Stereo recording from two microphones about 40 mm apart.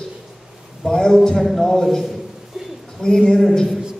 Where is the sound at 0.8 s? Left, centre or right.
Centre.